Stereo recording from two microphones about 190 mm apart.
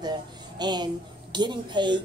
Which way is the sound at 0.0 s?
20° right (ahead or behind).